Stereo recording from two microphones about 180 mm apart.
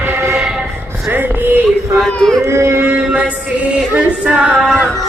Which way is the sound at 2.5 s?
15° right (ahead or behind).